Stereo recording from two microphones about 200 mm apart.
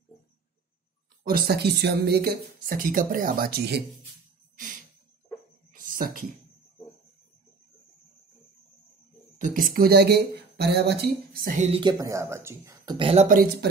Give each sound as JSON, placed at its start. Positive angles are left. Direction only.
{"t": 1.2, "sound": "speech", "side_deg": -50}
{"t": 5.7, "sound": "a sound", "side_deg": -45}
{"t": 9.4, "sound": "speech", "side_deg": -45}
{"t": 12.0, "sound": "speech", "side_deg": -15}
{"t": 13.3, "sound": "speech", "side_deg": -45}